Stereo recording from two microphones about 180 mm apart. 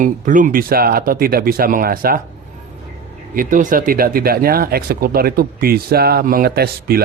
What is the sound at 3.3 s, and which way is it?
Speech, 50° right (ahead or behind).